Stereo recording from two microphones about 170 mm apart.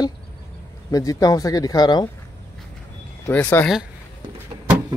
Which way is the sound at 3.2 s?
10° left (ahead or behind).